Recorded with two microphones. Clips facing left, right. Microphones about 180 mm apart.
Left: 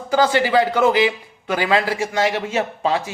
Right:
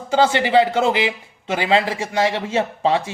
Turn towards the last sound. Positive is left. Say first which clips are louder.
# right 2 dB
turn(degrees=-30)  # may be behind; listen again after turning